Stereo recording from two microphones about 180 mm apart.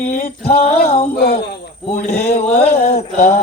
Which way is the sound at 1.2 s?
60° left (ahead or behind).